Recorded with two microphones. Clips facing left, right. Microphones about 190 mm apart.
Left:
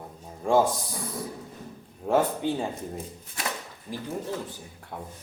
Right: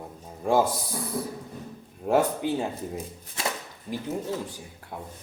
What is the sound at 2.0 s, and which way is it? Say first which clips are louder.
Speech: right 1 dB; 5° right (ahead or behind).